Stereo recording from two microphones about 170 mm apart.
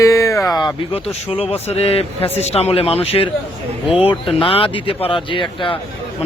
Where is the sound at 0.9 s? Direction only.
35° left (ahead or behind).